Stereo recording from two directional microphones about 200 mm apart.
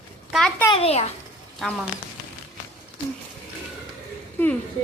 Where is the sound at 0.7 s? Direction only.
30° left (ahead or behind).